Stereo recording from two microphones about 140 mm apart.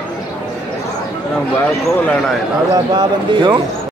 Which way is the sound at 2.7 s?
30° right (ahead or behind).